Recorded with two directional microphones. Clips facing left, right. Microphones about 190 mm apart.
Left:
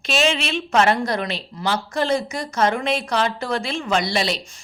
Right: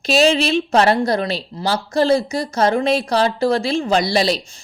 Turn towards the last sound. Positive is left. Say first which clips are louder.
# right 5 dB
turn(degrees=-35)  # may be behind; listen again after turning